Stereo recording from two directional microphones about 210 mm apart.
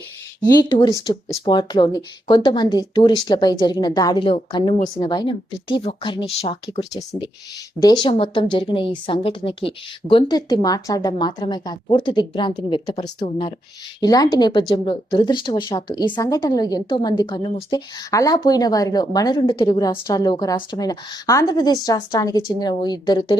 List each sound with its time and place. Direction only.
0.7 s a woman's voice: 20° left (ahead or behind)